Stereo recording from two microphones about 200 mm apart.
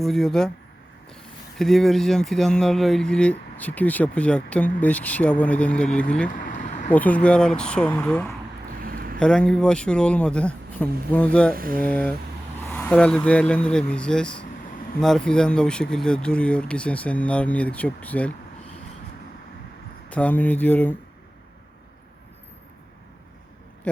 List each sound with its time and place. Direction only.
0.0 s speech: centre (ahead or behind)
6.4 s a sound: 40° left (ahead or behind)
6.9 s speech: 5° left (ahead or behind)
8.8 s a sound: 45° right (ahead or behind)
9.1 s speech: 5° left (ahead or behind)
11.5 s speech: 45° right (ahead or behind)
11.8 s speech: 5° left (ahead or behind)
20.1 s speech: 10° left (ahead or behind)